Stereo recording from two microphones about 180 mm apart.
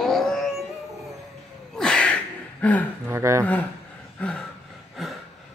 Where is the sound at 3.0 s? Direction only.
15° right (ahead or behind).